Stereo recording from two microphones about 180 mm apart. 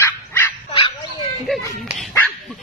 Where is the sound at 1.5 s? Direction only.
Centre (ahead or behind).